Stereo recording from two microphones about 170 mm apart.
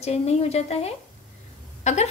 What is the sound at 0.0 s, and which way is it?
A woman's voice, 40° left (ahead or behind).